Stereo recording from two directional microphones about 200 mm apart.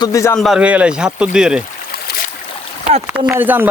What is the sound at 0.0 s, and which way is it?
Speech, 15° left (ahead or behind).